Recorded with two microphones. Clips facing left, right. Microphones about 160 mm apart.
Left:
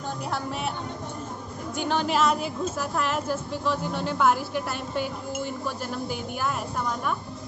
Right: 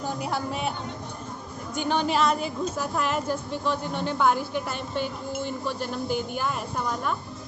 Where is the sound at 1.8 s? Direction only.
Centre (ahead or behind).